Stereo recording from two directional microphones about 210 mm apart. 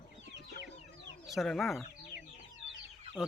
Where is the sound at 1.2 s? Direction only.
Centre (ahead or behind).